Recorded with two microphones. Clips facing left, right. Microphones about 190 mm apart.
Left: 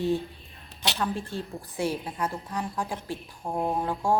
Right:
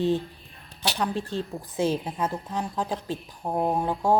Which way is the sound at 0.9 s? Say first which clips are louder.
Right 3 dB; 15° right (ahead or behind).